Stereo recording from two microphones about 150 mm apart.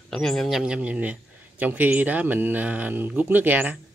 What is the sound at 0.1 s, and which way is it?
Speech, 5° left (ahead or behind).